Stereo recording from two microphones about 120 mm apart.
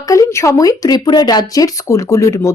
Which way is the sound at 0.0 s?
25° left (ahead or behind).